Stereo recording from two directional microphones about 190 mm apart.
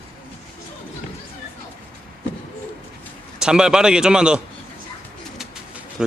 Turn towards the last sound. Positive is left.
turn(degrees=-5)  # may be behind; listen again after turning